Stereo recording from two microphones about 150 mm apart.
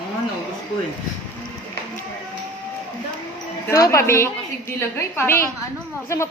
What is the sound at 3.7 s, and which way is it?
A woman's voice, 20° left (ahead or behind).